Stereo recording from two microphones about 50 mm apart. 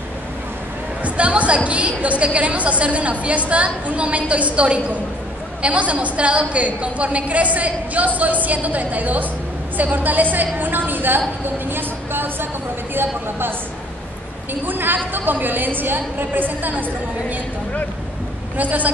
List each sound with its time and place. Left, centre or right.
1.0 s a woman's voice: right
9.8 s a sound: right
12.9 s a woman's voice: right
18.6 s a woman's voice: right